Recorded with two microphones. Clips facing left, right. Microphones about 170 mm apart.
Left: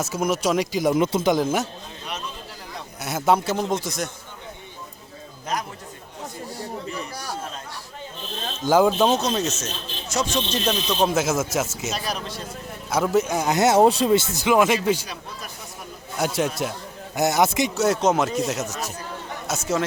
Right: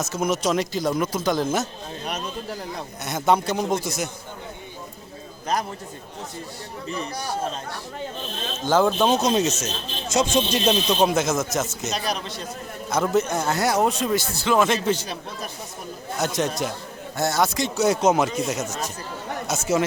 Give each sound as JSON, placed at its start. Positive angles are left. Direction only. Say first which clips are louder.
{"t": 0.3, "sound": "speech", "louder": "left 1 dB", "side_deg": 5}
{"t": 0.9, "sound": "speech", "louder": "left 5 dB", "side_deg": 25}
{"t": 1.4, "sound": "speech", "louder": "left 1 dB", "side_deg": 10}
{"t": 3.0, "sound": "a man's voice", "louder": "left 1 dB", "side_deg": 5}
{"t": 8.7, "sound": "speech", "louder": "left 1 dB", "side_deg": 10}
{"t": 9.2, "sound": "speech", "louder": "right 3 dB", "side_deg": -10}
{"t": 10.2, "sound": "speech", "louder": "right 4 dB", "side_deg": -20}
{"t": 10.7, "sound": "speech", "louder": "right 1 dB", "side_deg": -10}
{"t": 11.1, "sound": "a man's voice", "louder": "even", "side_deg": 5}
{"t": 16.1, "sound": "speech", "louder": "left 1 dB", "side_deg": 10}
{"t": 17.2, "sound": "speech", "louder": "left 3 dB", "side_deg": 20}
{"t": 17.7, "sound": "a man's voice", "louder": "right 2 dB", "side_deg": 0}